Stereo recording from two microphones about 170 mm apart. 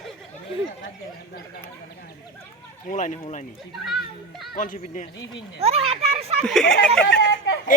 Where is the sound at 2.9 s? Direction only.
50° left (ahead or behind).